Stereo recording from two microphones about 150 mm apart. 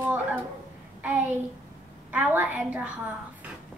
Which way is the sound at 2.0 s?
10° right (ahead or behind).